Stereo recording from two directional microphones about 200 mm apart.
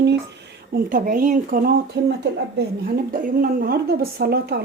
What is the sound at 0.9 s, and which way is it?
Speech, 45° right (ahead or behind).